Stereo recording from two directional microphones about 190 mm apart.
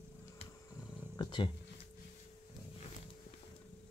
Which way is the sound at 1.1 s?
20° left (ahead or behind).